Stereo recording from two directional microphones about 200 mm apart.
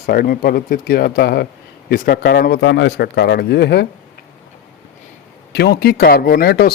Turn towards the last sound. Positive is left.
turn(degrees=50)  # may be behind; listen again after turning